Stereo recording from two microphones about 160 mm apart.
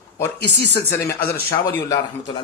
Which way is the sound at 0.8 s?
20° left (ahead or behind).